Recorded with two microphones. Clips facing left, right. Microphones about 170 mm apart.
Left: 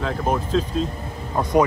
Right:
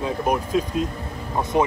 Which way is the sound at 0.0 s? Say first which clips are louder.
Even; 15° right (ahead or behind).